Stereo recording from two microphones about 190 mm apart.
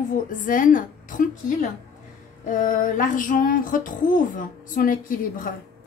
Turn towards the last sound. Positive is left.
turn(degrees=45)  # may be behind; listen again after turning